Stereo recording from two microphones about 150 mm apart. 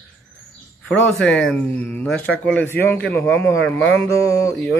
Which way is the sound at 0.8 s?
5° left (ahead or behind).